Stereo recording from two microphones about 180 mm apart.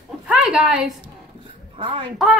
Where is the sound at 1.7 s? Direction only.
30° right (ahead or behind).